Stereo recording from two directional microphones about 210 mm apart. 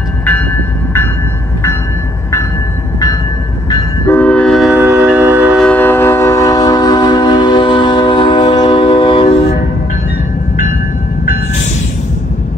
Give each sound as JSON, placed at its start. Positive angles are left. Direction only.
{"t": 4.0, "sound": "train", "side_deg": 10}
{"t": 5.7, "sound": "train", "side_deg": 10}